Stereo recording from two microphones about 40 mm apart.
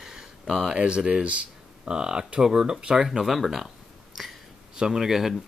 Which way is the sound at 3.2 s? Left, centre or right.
Centre.